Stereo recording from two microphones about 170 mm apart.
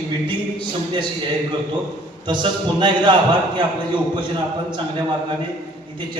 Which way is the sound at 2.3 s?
25° right (ahead or behind).